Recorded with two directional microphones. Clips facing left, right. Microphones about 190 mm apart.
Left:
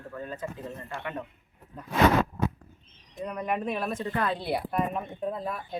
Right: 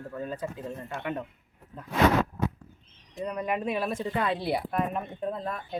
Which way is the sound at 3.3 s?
5° right (ahead or behind).